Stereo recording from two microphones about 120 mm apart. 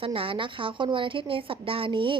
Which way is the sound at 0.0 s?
50° right (ahead or behind).